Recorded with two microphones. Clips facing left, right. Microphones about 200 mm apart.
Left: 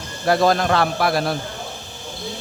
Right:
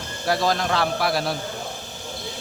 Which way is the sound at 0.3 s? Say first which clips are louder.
Left 5 dB; 55° left (ahead or behind).